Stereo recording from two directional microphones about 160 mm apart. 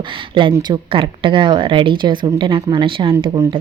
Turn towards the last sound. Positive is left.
turn(degrees=-30)  # may be behind; listen again after turning